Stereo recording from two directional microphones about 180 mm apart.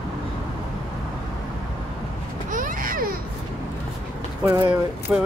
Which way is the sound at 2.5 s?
50° right (ahead or behind).